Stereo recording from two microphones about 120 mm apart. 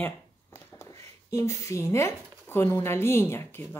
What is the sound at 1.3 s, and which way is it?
Speech, 25° left (ahead or behind).